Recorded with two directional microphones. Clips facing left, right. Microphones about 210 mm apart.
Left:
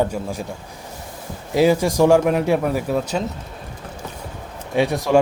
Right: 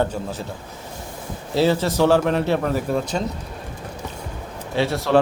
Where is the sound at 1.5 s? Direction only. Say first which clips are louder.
Left 3 dB; 15° left (ahead or behind).